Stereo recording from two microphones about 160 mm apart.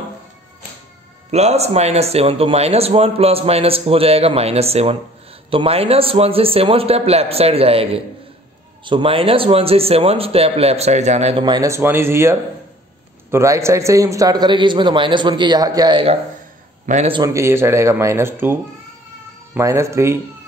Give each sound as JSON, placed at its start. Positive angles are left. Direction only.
{"t": 1.3, "sound": "a man's voice", "side_deg": -40}
{"t": 11.4, "sound": "a man's voice", "side_deg": -25}
{"t": 16.8, "sound": "a man's voice", "side_deg": -50}
{"t": 17.1, "sound": "speech", "side_deg": -20}